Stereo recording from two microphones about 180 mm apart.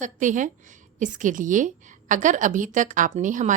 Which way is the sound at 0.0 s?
45° right (ahead or behind).